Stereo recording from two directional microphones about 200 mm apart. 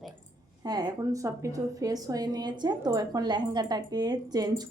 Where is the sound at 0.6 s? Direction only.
20° right (ahead or behind).